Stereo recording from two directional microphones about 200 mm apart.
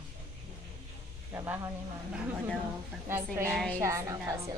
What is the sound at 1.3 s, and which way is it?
Speech, 10° right (ahead or behind).